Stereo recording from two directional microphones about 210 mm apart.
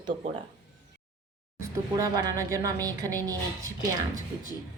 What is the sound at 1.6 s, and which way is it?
A woman's voice, 15° right (ahead or behind).